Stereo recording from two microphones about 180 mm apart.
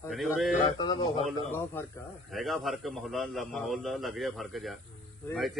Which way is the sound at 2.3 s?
Centre (ahead or behind).